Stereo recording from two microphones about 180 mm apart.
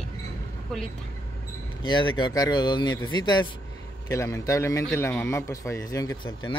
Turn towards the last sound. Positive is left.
turn(degrees=20)  # may be behind; listen again after turning